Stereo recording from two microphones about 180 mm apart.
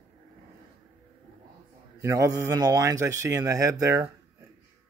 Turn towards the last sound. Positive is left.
turn(degrees=-15)  # may be behind; listen again after turning